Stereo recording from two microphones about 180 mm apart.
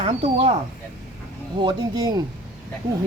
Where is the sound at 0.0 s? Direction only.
30° right (ahead or behind).